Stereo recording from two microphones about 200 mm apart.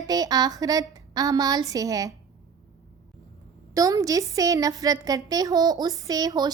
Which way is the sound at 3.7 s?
15° right (ahead or behind).